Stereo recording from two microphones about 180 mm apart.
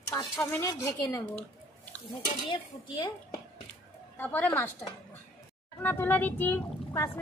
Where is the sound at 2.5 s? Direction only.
25° left (ahead or behind).